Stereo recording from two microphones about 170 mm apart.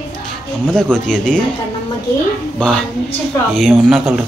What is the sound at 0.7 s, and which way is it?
Speech, 5° left (ahead or behind).